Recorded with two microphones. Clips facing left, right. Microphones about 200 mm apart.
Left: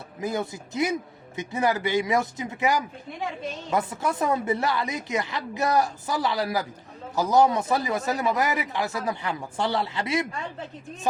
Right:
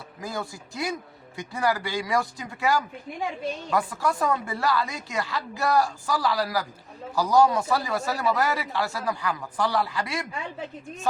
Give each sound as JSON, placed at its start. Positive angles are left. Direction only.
{"t": 0.2, "sound": "speech", "side_deg": 20}